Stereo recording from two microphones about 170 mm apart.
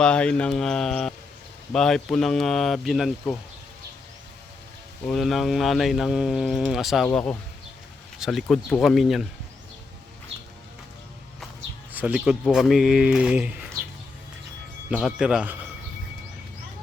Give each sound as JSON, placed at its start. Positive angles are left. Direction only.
{"t": 0.0, "sound": "speech", "side_deg": 5}
{"t": 5.0, "sound": "speech", "side_deg": 0}
{"t": 11.9, "sound": "speech", "side_deg": -5}
{"t": 14.8, "sound": "speech", "side_deg": -5}